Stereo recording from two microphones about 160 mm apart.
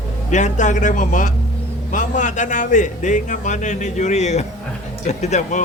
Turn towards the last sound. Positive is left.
turn(degrees=45)  # may be behind; listen again after turning